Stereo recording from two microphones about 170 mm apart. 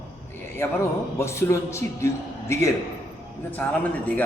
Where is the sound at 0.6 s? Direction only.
15° left (ahead or behind).